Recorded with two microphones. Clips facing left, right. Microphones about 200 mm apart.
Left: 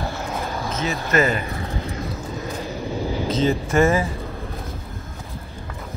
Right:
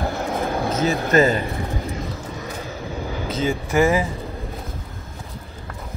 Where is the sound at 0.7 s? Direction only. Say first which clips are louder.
Right 5 dB; 35° right (ahead or behind).